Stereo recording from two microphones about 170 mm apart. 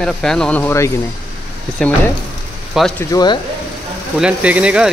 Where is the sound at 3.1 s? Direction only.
25° left (ahead or behind).